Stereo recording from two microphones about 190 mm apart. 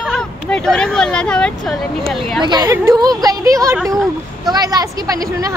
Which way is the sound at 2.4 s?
25° right (ahead or behind).